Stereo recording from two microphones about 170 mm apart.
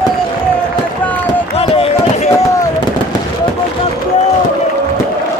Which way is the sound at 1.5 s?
35° left (ahead or behind).